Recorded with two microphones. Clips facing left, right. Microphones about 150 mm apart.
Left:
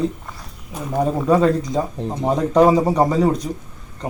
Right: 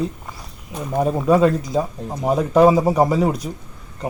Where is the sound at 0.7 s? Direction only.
Centre (ahead or behind).